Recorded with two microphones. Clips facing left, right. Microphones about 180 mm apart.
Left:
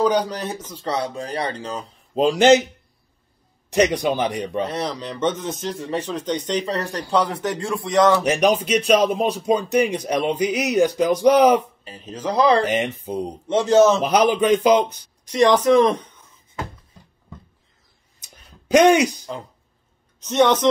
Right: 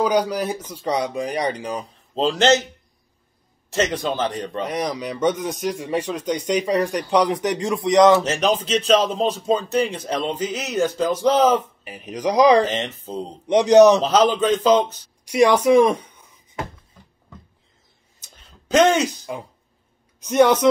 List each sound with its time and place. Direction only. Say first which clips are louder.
0.0 s speech: even; 10° right (ahead or behind)
2.1 s speech: left 3 dB; 15° left (ahead or behind)
3.7 s speech: left 4 dB; 15° left (ahead or behind)
4.6 s speech: right 2 dB; 15° right (ahead or behind)
8.2 s speech: left 2 dB; 15° left (ahead or behind)
11.8 s speech: right 4 dB; 15° right (ahead or behind)
12.6 s speech: left 3 dB; 10° left (ahead or behind)
13.5 s speech: right 3 dB; 15° right (ahead or behind)
14.0 s speech: even; 15° left (ahead or behind)
15.2 s speech: even; 10° right (ahead or behind)
18.2 s a sound: left 2 dB; 15° left (ahead or behind)
19.3 s speech: right 1 dB; 10° right (ahead or behind)